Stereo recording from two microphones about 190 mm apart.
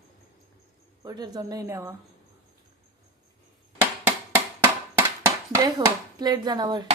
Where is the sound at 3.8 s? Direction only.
10° right (ahead or behind).